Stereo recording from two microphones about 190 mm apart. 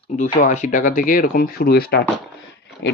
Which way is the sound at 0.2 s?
40° left (ahead or behind).